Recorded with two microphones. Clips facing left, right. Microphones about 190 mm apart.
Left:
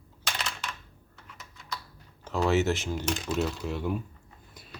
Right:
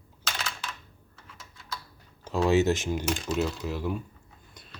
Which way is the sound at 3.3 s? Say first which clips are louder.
Even; centre (ahead or behind).